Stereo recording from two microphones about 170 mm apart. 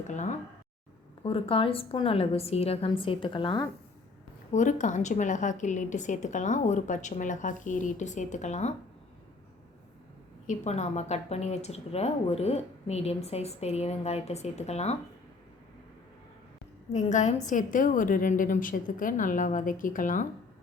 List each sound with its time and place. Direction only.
0.1 s a woman's voice: 45° left (ahead or behind)
1.2 s a woman's voice: 35° left (ahead or behind)
4.5 s a woman's voice: 45° left (ahead or behind)
10.5 s a woman's voice: 40° left (ahead or behind)
16.9 s a woman's voice: 45° left (ahead or behind)